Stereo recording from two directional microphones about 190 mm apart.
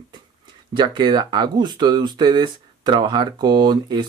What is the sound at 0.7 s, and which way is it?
Speech, 25° right (ahead or behind).